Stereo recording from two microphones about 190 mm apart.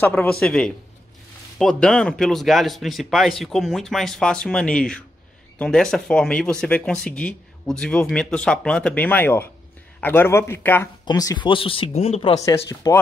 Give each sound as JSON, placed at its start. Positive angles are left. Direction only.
{"t": 0.0, "sound": "speech", "side_deg": 5}
{"t": 12.9, "sound": "speech", "side_deg": 15}